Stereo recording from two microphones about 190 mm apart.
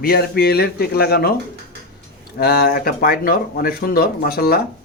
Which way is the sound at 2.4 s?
55° left (ahead or behind).